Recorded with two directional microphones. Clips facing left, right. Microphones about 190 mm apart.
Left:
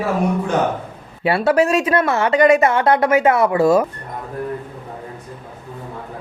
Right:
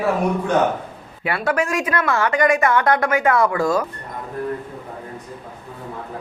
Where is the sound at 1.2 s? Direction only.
30° left (ahead or behind).